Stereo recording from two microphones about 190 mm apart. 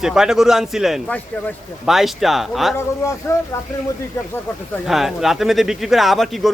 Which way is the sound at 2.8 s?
15° left (ahead or behind).